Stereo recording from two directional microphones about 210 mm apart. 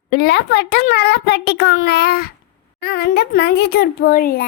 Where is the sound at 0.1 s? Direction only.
50° left (ahead or behind).